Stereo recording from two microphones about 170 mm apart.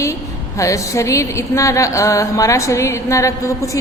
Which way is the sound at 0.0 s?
15° left (ahead or behind).